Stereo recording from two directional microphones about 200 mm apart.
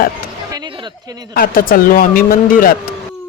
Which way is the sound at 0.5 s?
20° right (ahead or behind).